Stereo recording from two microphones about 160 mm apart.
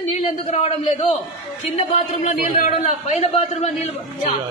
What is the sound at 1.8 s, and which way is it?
A man's voice, 50° left (ahead or behind).